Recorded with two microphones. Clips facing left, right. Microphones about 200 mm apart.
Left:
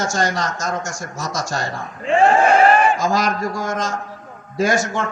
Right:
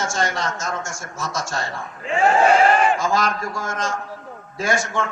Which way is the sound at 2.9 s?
40° left (ahead or behind).